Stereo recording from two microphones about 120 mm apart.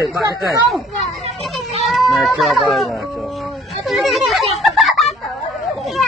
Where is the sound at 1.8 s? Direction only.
Centre (ahead or behind).